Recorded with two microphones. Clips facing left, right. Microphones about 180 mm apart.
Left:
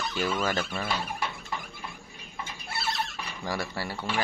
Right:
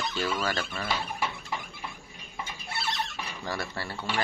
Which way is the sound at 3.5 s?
10° left (ahead or behind).